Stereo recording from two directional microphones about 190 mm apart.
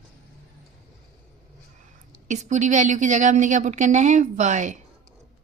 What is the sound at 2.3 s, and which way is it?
Speech, 40° right (ahead or behind).